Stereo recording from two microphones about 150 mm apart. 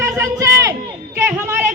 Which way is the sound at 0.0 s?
20° right (ahead or behind).